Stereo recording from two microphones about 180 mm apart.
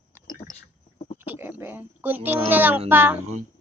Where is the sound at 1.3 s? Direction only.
10° right (ahead or behind).